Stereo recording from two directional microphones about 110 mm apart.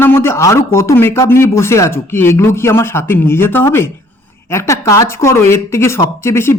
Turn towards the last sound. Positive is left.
turn(degrees=25)  # may be behind; listen again after turning